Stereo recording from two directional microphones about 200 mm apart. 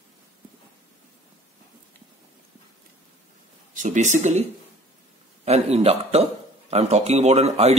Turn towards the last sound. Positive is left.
turn(degrees=-35)  # may be behind; listen again after turning